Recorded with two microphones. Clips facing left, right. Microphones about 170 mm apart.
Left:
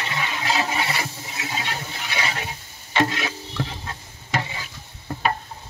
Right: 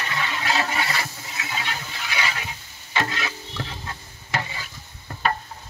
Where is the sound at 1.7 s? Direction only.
30° left (ahead or behind).